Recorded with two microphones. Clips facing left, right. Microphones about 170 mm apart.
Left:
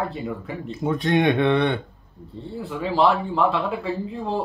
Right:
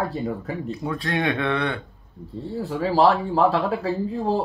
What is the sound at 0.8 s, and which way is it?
Speech, 20° left (ahead or behind).